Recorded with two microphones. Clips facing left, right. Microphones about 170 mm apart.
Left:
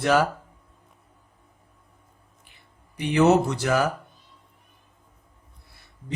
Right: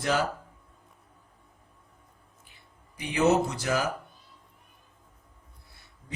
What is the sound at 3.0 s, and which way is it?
Speech, 65° left (ahead or behind).